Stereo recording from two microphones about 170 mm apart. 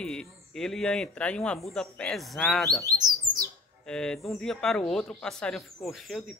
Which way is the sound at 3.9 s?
5° left (ahead or behind).